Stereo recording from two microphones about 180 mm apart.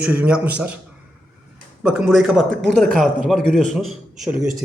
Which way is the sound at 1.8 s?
5° right (ahead or behind).